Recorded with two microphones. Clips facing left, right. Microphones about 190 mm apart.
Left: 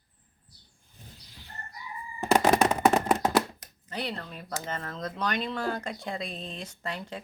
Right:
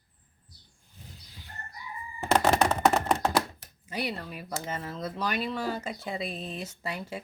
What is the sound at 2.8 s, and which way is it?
Chopping, 5° left (ahead or behind).